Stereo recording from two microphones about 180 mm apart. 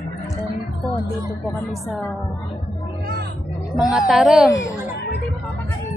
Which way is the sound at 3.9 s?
Centre (ahead or behind).